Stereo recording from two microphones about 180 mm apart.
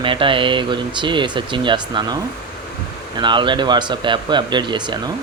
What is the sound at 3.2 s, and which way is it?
Speech, 25° right (ahead or behind).